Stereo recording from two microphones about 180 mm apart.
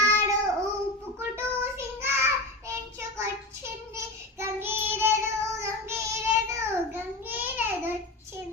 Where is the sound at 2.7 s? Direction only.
15° right (ahead or behind).